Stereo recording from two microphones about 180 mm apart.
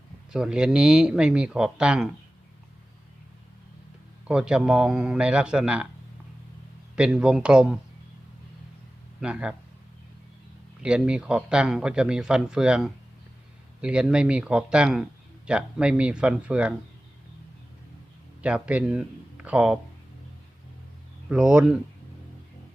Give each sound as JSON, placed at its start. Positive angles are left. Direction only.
{"t": 0.3, "sound": "speech", "side_deg": -5}
{"t": 4.3, "sound": "speech", "side_deg": -5}
{"t": 6.9, "sound": "speech", "side_deg": -5}
{"t": 9.2, "sound": "speech", "side_deg": -5}
{"t": 10.8, "sound": "speech", "side_deg": -5}
{"t": 18.4, "sound": "speech", "side_deg": -5}
{"t": 21.2, "sound": "speech", "side_deg": -5}